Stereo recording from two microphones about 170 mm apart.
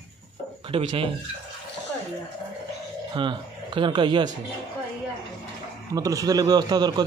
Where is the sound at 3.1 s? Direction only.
30° right (ahead or behind).